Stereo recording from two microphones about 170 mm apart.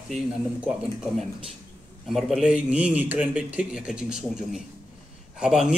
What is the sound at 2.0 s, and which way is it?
A man's voice, centre (ahead or behind).